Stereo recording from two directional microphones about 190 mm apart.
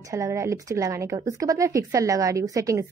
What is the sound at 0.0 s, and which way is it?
A woman's voice, 15° right (ahead or behind).